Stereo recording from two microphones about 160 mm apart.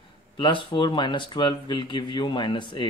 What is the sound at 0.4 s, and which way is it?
Speech, 30° left (ahead or behind).